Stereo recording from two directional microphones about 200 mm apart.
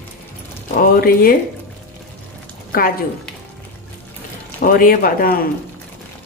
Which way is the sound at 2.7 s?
45° left (ahead or behind).